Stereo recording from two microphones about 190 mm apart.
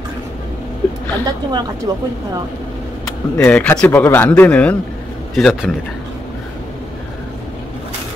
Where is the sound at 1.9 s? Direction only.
20° right (ahead or behind).